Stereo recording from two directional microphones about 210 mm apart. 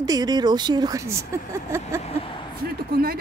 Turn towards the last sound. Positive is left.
turn(degrees=-45)  # may be behind; listen again after turning